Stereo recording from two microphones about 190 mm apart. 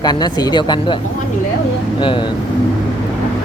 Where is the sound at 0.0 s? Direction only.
20° left (ahead or behind).